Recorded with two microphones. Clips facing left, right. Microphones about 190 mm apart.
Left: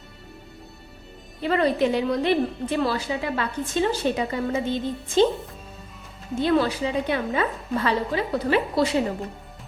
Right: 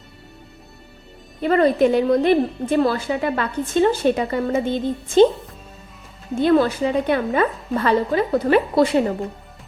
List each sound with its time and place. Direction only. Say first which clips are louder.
1.4 s a woman's voice: right 5 dB; 50° right (ahead or behind)
6.4 s a woman's voice: right 5 dB; 50° right (ahead or behind)